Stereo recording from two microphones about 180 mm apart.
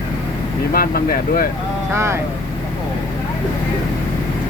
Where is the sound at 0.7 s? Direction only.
55° left (ahead or behind).